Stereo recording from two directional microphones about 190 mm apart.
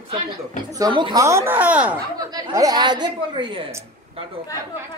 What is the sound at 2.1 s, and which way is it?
A woman's voice, 20° right (ahead or behind).